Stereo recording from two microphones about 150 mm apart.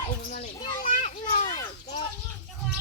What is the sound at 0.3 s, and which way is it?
Children playing, 65° left (ahead or behind).